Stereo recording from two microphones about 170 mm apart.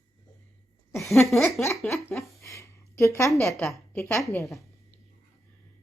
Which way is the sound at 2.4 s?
15° left (ahead or behind).